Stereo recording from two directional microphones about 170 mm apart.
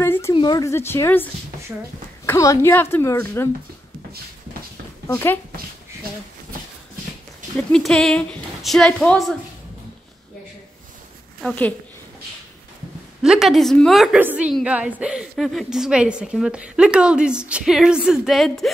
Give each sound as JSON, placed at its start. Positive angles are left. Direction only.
{"t": 0.0, "sound": "a sound", "side_deg": 15}
{"t": 0.3, "sound": "a woman's voice", "side_deg": 25}
{"t": 5.0, "sound": "speech", "side_deg": 15}
{"t": 7.5, "sound": "a woman's voice", "side_deg": 5}
{"t": 11.4, "sound": "a woman's voice", "side_deg": 10}
{"t": 13.2, "sound": "a woman's voice", "side_deg": 0}